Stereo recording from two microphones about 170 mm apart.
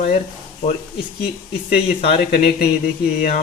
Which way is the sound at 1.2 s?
65° left (ahead or behind).